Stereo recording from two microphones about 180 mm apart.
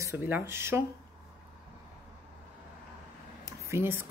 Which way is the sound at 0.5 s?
15° right (ahead or behind).